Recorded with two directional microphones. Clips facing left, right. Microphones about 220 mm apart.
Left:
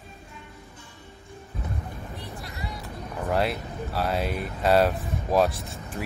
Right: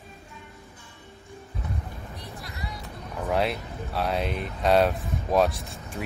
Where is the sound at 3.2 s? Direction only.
Centre (ahead or behind).